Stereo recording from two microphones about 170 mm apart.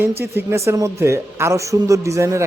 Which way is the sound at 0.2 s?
15° right (ahead or behind).